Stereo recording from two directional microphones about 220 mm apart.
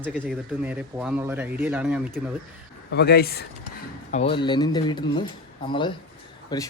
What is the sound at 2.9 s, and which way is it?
Speech, 45° left (ahead or behind).